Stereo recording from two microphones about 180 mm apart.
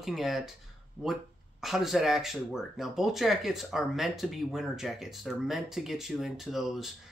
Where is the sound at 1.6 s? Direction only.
Centre (ahead or behind).